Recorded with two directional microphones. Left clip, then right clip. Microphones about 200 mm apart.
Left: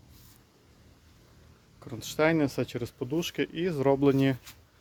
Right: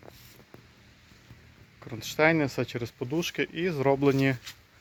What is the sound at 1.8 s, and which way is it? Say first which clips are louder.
Speech: right 2 dB; 5° left (ahead or behind).